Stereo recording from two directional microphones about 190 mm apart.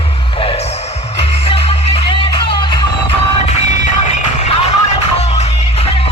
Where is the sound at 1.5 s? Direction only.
30° left (ahead or behind).